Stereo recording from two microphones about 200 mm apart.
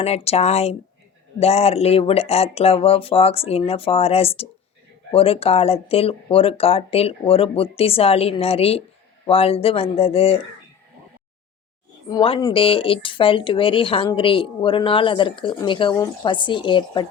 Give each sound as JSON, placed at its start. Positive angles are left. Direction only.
{"t": 0.0, "sound": "speech", "side_deg": 30}
{"t": 12.0, "sound": "speech", "side_deg": 25}